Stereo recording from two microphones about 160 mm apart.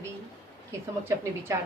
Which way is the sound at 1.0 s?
15° right (ahead or behind).